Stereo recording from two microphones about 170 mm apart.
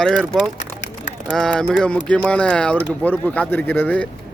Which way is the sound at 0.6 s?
90° left.